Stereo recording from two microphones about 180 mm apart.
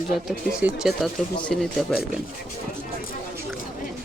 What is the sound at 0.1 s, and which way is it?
Speech, centre (ahead or behind).